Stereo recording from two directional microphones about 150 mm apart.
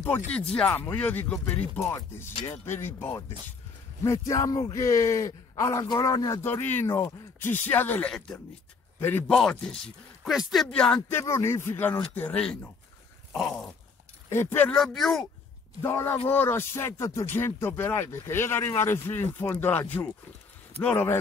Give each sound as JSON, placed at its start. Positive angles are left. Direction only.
{"t": 0.0, "sound": "a man's voice", "side_deg": 10}
{"t": 6.4, "sound": "speech", "side_deg": 15}
{"t": 13.3, "sound": "a sound", "side_deg": 0}
{"t": 14.3, "sound": "speech", "side_deg": 15}
{"t": 14.8, "sound": "speech", "side_deg": 0}
{"t": 15.8, "sound": "speech", "side_deg": 15}